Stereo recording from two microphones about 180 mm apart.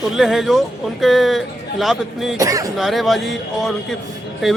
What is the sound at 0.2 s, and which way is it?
Speech, centre (ahead or behind).